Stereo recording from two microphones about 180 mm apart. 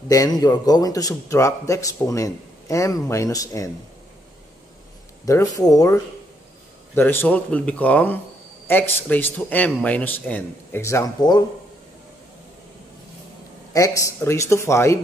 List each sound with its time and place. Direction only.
0.1 s a man's voice: 20° left (ahead or behind)
5.2 s a man's voice: 20° left (ahead or behind)
7.0 s a man's voice: 10° left (ahead or behind)
13.7 s a man's voice: 20° left (ahead or behind)